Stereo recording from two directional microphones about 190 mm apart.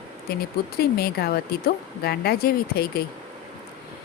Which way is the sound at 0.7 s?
55° left (ahead or behind).